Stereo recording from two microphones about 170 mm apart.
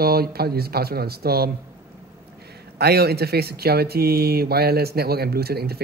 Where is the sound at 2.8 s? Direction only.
70° right (ahead or behind).